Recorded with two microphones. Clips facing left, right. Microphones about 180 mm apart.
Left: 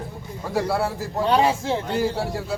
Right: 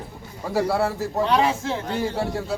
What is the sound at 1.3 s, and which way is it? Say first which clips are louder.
Speech: left 3 dB; 30° left (ahead or behind).